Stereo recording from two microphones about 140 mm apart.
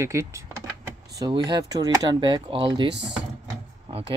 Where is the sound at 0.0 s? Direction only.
20° right (ahead or behind).